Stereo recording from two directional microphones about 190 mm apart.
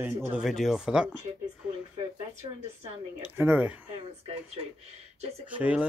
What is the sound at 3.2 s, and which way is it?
Speech, 10° right (ahead or behind).